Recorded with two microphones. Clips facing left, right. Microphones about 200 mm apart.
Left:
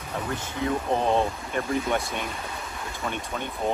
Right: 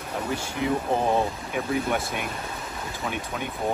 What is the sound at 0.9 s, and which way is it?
Speech, 10° right (ahead or behind).